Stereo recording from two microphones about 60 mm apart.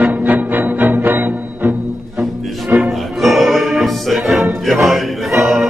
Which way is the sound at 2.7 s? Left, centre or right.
Right.